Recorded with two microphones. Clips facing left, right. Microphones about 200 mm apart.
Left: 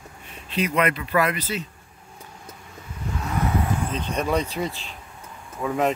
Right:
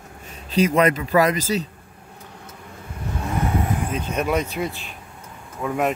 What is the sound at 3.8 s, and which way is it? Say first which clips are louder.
Speech: right 2 dB; 10° right (ahead or behind).